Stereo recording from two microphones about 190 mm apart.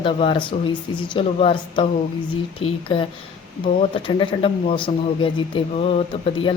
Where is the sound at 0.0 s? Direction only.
30° left (ahead or behind).